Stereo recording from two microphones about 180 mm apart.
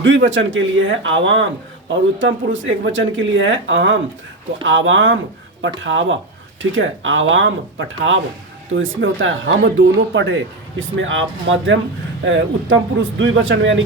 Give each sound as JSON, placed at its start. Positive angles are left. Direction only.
{"t": 0.0, "sound": "speech", "side_deg": -90}